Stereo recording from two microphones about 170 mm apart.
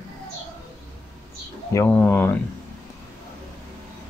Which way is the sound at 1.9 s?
10° left (ahead or behind).